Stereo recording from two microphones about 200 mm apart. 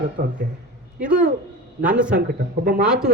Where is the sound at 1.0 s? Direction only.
5° right (ahead or behind).